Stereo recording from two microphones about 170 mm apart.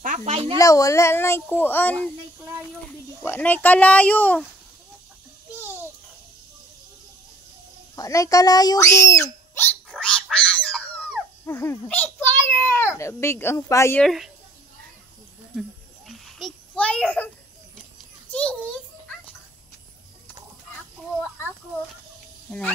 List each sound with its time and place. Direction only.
0.0 s speech: 45° right (ahead or behind)
0.6 s speech: 20° left (ahead or behind)
3.2 s speech: 10° left (ahead or behind)
7.9 s speech: 20° left (ahead or behind)
14.0 s speech: centre (ahead or behind)
16.1 s a sound: centre (ahead or behind)
18.3 s a sound: 5° left (ahead or behind)